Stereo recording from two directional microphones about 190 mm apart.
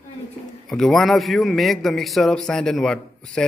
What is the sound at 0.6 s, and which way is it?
A man's voice, centre (ahead or behind).